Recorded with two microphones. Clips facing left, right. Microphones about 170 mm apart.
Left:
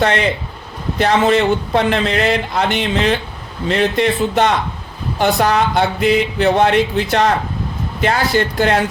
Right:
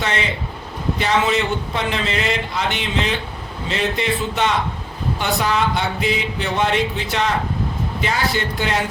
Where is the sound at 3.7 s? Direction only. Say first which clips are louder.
Left 6 dB; 55° left (ahead or behind).